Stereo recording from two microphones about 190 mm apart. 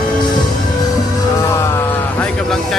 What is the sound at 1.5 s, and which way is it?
A man's voice, 10° left (ahead or behind).